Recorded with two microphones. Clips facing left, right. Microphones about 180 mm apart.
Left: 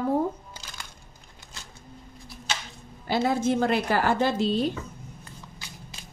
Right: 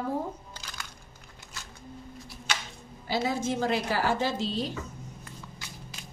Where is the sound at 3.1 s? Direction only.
60° left (ahead or behind).